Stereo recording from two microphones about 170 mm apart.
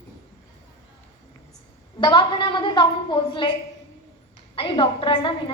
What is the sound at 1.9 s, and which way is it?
A woman's voice, 30° left (ahead or behind).